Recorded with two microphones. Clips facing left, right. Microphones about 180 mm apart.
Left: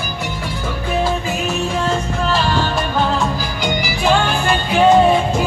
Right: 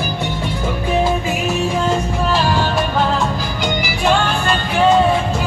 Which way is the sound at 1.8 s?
5° right (ahead or behind).